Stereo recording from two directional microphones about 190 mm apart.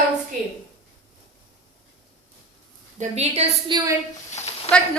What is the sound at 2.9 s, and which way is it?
Speech, 35° right (ahead or behind).